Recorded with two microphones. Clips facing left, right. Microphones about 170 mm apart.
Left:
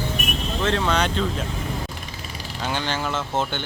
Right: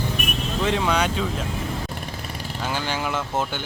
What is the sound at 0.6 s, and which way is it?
Speech, 10° right (ahead or behind).